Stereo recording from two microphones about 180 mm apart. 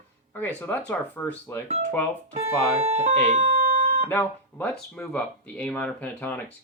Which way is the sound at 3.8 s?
50° right (ahead or behind).